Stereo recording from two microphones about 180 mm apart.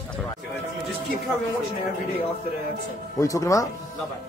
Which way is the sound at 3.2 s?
20° left (ahead or behind).